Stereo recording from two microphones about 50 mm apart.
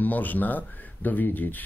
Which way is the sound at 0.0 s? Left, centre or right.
Left.